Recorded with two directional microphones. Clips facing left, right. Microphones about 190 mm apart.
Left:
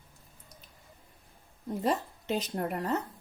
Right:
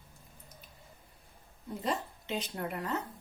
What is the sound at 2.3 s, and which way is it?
Speech, 40° left (ahead or behind).